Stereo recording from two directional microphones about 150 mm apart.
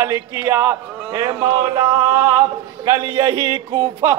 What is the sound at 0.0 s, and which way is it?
A man's voice, 20° right (ahead or behind).